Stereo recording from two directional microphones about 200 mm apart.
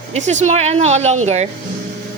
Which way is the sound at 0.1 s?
35° right (ahead or behind).